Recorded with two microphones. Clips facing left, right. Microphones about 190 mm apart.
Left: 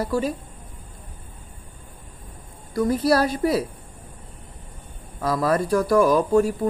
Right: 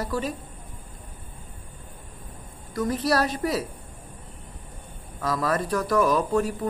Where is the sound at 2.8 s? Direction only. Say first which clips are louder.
Left 4 dB; 10° left (ahead or behind).